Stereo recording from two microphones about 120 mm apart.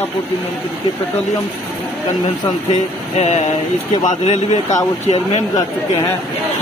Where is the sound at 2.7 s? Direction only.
65° left (ahead or behind).